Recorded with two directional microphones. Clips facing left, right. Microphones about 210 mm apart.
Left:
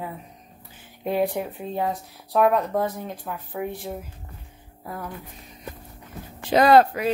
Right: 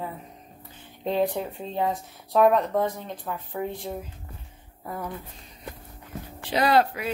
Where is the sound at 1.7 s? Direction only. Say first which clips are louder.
Even; centre (ahead or behind).